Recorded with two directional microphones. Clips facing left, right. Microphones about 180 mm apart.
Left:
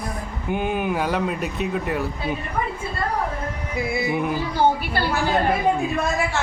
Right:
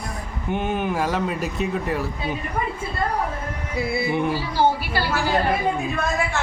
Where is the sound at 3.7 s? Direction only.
20° left (ahead or behind).